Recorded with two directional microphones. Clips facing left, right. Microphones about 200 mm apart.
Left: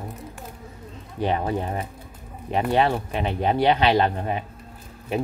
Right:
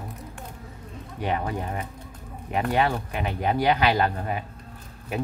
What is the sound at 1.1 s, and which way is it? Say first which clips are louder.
Speech: left 4 dB; 30° left (ahead or behind).